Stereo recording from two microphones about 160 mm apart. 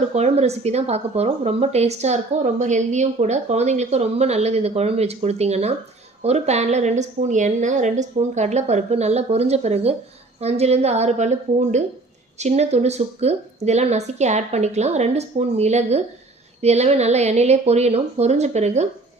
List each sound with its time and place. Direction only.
0.1 s a woman's voice: 45° right (ahead or behind)